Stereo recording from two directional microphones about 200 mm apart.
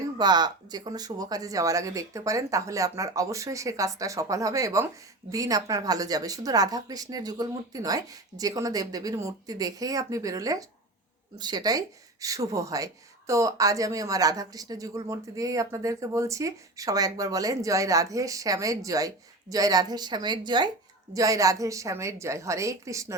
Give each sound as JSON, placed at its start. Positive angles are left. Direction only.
{"t": 0.2, "sound": "speech", "side_deg": -20}